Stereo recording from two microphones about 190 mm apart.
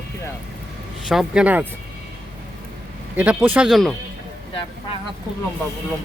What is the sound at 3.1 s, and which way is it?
Speech, 10° right (ahead or behind).